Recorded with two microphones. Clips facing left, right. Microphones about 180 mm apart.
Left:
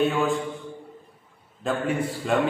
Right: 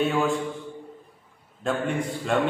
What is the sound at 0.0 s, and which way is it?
Speech, centre (ahead or behind).